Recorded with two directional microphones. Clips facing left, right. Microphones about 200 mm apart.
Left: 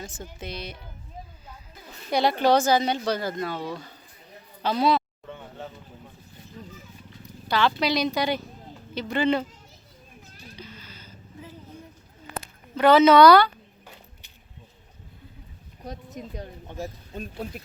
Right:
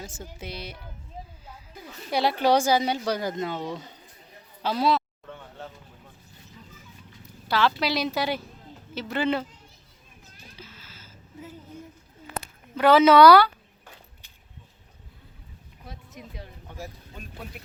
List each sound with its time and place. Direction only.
0.0 s speech: 10° right (ahead or behind)
2.0 s speech: 5° right (ahead or behind); by 3.9 s 20° right (ahead or behind)
4.6 s a woman's voice: 5° right (ahead or behind)
7.4 s a woman's voice: centre (ahead or behind)
10.6 s a sound: 5° right (ahead or behind)
12.7 s speech: 5° right (ahead or behind)
15.8 s speech: 45° left (ahead or behind)
16.6 s speech: 25° left (ahead or behind)